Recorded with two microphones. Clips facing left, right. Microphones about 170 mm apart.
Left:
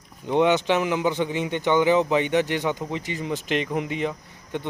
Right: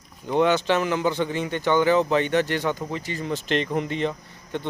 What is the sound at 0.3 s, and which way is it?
A man's voice, 20° left (ahead or behind).